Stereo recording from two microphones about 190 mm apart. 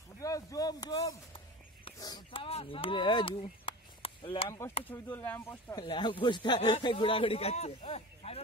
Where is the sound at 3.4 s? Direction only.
30° left (ahead or behind).